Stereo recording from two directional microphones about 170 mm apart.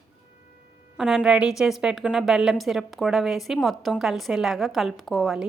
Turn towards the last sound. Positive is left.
turn(degrees=0)  # may be behind; listen again after turning